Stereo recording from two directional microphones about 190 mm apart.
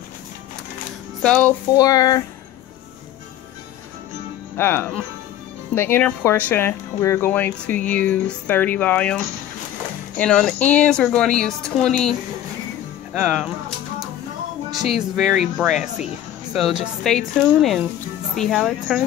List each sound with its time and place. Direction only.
1.2 s a woman's voice: 5° left (ahead or behind)
1.7 s speech: 20° left (ahead or behind)
4.6 s a woman's voice: 10° left (ahead or behind)
14.8 s a woman's voice: centre (ahead or behind)